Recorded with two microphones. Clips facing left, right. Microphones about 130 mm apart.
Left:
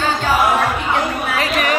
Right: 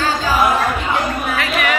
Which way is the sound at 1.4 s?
40° left (ahead or behind).